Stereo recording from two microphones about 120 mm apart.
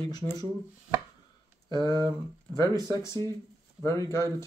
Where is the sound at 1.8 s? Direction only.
35° right (ahead or behind).